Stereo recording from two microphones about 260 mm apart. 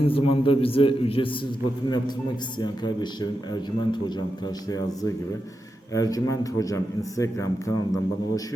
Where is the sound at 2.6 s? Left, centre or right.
Centre.